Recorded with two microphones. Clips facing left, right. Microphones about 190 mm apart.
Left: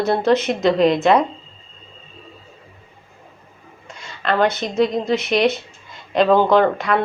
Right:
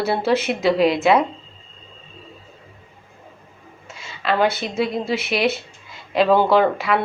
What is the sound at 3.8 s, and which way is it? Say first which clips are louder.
A woman's voice: left 1 dB; 5° right (ahead or behind).